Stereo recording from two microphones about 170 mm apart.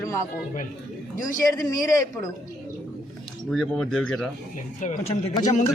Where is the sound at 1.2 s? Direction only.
20° left (ahead or behind).